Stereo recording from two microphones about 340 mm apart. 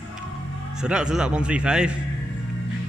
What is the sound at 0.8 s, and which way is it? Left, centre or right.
A man's voice, centre.